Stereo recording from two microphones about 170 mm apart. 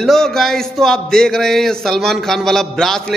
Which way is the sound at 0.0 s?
Centre (ahead or behind).